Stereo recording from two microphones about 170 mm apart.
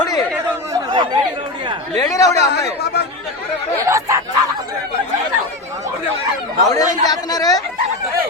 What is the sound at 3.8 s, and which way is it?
Speech, 15° right (ahead or behind).